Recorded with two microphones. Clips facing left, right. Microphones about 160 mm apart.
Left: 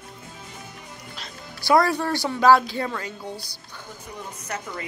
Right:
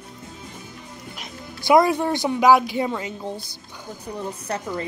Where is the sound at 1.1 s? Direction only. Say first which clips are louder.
Right 3 dB; 20° right (ahead or behind).